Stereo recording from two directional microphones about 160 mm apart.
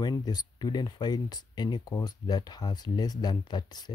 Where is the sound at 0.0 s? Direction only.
25° left (ahead or behind).